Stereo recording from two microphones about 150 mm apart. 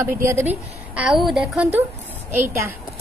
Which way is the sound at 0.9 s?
5° right (ahead or behind).